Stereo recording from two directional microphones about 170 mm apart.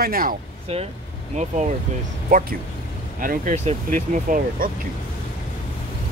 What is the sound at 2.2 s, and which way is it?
Speech, 55° right (ahead or behind).